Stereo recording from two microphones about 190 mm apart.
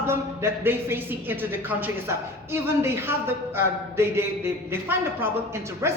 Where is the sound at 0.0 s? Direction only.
15° right (ahead or behind).